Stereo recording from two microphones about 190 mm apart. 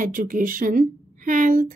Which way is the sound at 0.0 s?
45° right (ahead or behind).